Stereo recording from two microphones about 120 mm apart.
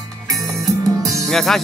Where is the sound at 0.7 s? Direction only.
30° right (ahead or behind).